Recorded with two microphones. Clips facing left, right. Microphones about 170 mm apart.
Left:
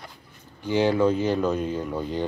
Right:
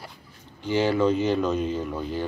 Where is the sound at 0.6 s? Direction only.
15° left (ahead or behind).